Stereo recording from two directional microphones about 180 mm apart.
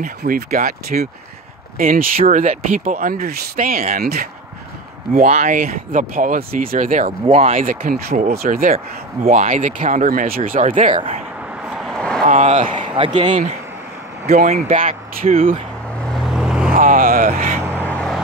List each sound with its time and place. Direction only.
0.2 s speech: 55° right (ahead or behind)
5.1 s speech: 40° right (ahead or behind)
7.2 s speech: 35° right (ahead or behind)
7.5 s speech: 50° right (ahead or behind)
8.7 s speech: 40° right (ahead or behind)
11.6 s vehicle: centre (ahead or behind)
12.3 s speech: 40° right (ahead or behind)
12.7 s a man's voice: 25° right (ahead or behind)
14.5 s speech: 40° right (ahead or behind)
16.0 s vehicle: centre (ahead or behind)
16.7 s vehicle: 50° right (ahead or behind)
17.7 s vehicle: 10° left (ahead or behind)